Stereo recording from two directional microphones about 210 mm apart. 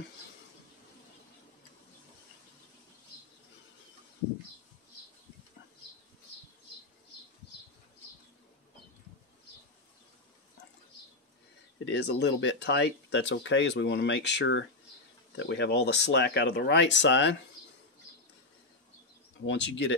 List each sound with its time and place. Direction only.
11.8 s speech: 55° left (ahead or behind)
19.4 s speech: 60° left (ahead or behind)